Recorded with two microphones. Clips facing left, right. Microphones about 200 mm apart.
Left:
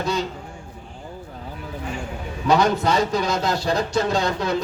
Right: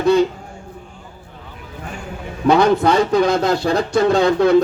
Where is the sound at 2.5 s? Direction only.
55° right (ahead or behind).